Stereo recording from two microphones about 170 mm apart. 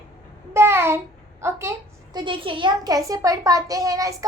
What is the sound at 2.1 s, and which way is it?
A child's voice, 30° right (ahead or behind).